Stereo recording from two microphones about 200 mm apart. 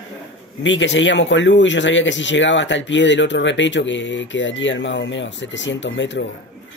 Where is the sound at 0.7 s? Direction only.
65° left (ahead or behind).